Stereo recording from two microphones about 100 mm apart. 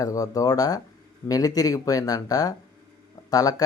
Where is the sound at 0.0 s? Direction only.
35° left (ahead or behind).